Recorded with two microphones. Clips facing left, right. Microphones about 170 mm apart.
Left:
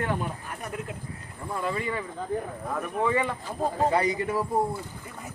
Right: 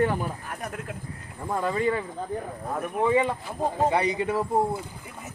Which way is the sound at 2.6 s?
25° right (ahead or behind).